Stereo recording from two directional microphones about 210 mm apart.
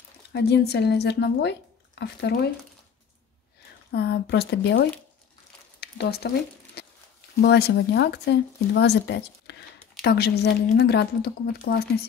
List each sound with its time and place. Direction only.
0.3 s speech: 50° left (ahead or behind)
3.9 s speech: 50° left (ahead or behind)
5.8 s a sound: 50° left (ahead or behind)
7.4 s speech: 55° left (ahead or behind)